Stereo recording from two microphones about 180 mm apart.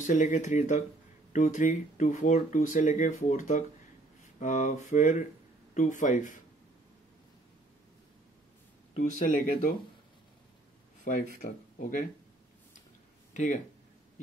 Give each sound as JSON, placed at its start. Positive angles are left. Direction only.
{"t": 0.0, "sound": "speech", "side_deg": 45}
{"t": 9.2, "sound": "speech", "side_deg": 50}
{"t": 11.1, "sound": "speech", "side_deg": 45}
{"t": 13.3, "sound": "speech", "side_deg": 45}